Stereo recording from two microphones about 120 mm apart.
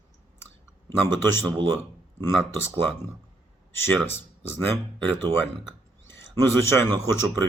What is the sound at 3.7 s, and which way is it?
Speech, 20° left (ahead or behind).